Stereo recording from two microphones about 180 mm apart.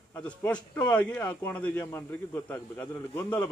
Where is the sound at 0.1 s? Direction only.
10° left (ahead or behind).